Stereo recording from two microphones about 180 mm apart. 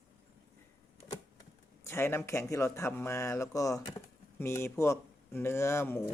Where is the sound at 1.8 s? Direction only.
15° left (ahead or behind).